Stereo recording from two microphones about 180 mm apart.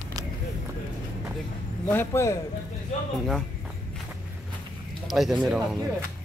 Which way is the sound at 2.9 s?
40° left (ahead or behind).